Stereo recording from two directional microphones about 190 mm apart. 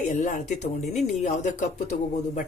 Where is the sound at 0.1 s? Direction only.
40° left (ahead or behind).